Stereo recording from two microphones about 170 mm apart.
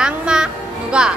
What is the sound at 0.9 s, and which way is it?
Speech, 5° right (ahead or behind).